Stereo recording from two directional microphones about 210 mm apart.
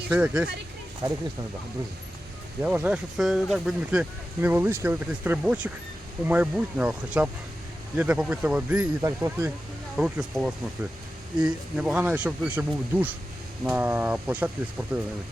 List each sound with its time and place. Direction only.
0.1 s speech: 5° right (ahead or behind)
1.0 s speech: 20° right (ahead or behind)
2.6 s speech: 5° right (ahead or behind)